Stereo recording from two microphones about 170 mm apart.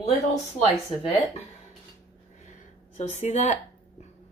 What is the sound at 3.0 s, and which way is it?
Speech, 40° left (ahead or behind).